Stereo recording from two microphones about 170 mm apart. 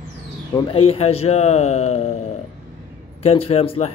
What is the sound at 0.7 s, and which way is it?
A man's voice, 35° left (ahead or behind).